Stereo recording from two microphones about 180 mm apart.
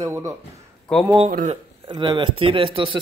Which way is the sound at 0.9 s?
5° left (ahead or behind).